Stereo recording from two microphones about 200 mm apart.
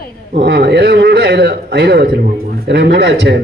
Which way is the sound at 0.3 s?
55° right (ahead or behind).